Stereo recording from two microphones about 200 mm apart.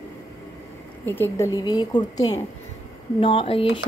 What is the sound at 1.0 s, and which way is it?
A woman's voice, 10° left (ahead or behind).